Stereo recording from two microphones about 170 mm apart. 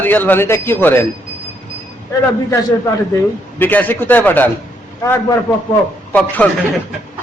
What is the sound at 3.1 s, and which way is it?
A man's voice, 10° left (ahead or behind).